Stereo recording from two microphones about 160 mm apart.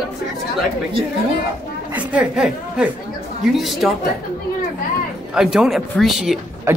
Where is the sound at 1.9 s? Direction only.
10° right (ahead or behind).